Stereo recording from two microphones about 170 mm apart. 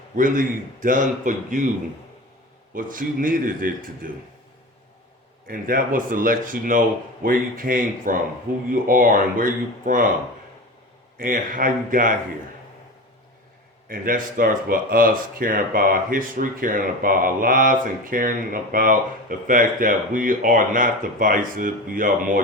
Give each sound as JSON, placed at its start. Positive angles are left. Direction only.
{"t": 0.2, "sound": "speech", "side_deg": -50}
{"t": 2.7, "sound": "speech", "side_deg": -55}
{"t": 5.5, "sound": "speech", "side_deg": -55}
{"t": 11.2, "sound": "speech", "side_deg": -55}
{"t": 13.8, "sound": "speech", "side_deg": -55}